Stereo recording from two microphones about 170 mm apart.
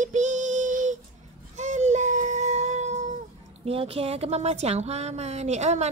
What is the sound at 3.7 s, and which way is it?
A woman's voice, 35° right (ahead or behind).